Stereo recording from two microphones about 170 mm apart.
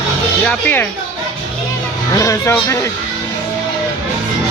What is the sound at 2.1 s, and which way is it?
Speech, 20° left (ahead or behind).